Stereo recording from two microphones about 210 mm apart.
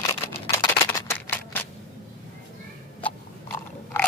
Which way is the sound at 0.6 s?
10° left (ahead or behind).